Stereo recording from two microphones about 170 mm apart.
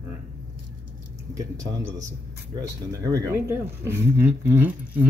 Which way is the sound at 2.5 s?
20° right (ahead or behind).